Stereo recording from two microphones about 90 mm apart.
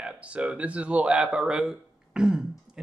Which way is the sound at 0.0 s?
15° right (ahead or behind).